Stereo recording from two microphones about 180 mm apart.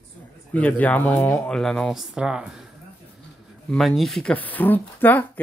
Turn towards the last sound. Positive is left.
turn(degrees=10)  # may be behind; listen again after turning